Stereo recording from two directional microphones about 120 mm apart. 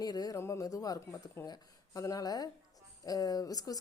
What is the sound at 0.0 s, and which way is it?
A woman's voice, 30° left (ahead or behind).